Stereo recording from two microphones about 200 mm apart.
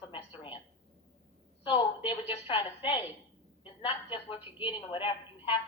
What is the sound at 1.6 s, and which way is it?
A woman's voice, 25° left (ahead or behind).